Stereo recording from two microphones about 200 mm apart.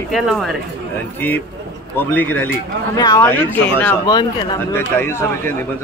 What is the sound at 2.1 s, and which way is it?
Speech, 10° left (ahead or behind).